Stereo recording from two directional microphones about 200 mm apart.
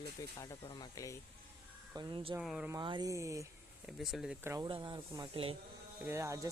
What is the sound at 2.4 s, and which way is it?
Speech, 5° right (ahead or behind).